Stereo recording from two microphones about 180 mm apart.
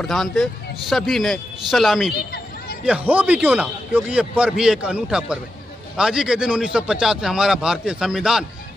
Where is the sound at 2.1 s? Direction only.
60° left (ahead or behind).